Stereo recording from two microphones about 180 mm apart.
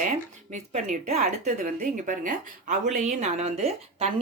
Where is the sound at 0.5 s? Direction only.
45° right (ahead or behind).